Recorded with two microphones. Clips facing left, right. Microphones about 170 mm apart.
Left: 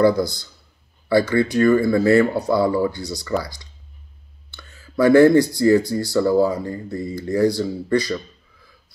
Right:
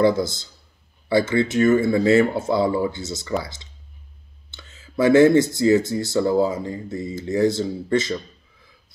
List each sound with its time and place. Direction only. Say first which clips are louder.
0.0 s speech: left 2 dB; 20° right (ahead or behind)
4.5 s speech: left 1 dB; 20° right (ahead or behind)